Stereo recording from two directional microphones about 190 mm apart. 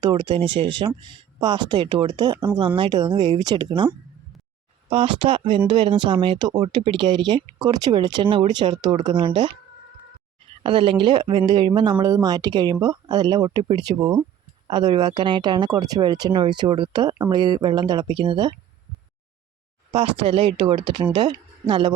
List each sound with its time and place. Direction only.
0.0 s speech: 25° right (ahead or behind)
4.9 s speech: 30° right (ahead or behind)
10.6 s speech: 25° right (ahead or behind)
19.9 s speech: 30° right (ahead or behind)